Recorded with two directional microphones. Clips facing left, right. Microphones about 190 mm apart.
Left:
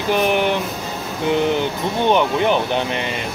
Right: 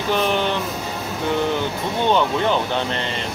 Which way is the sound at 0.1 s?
15° left (ahead or behind).